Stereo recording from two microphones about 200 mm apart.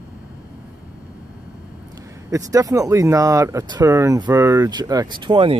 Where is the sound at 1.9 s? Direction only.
15° right (ahead or behind).